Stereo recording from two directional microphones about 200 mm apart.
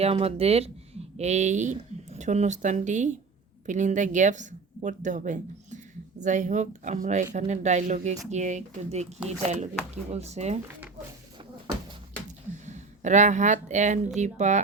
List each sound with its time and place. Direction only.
0.0 s speech: 30° right (ahead or behind)
12.6 s speech: 35° right (ahead or behind)